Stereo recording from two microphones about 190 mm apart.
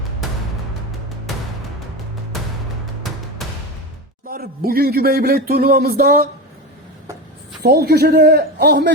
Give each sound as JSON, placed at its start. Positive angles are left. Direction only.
{"t": 3.4, "sound": "music", "side_deg": 0}
{"t": 4.3, "sound": "speech", "side_deg": -50}
{"t": 7.6, "sound": "a man's voice", "side_deg": -55}